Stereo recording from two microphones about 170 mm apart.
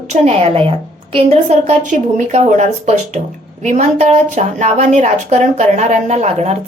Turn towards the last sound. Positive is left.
turn(degrees=-40)  # may be behind; listen again after turning